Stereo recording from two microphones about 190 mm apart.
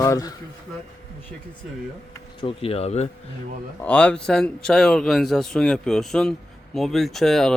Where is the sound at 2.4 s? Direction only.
30° left (ahead or behind).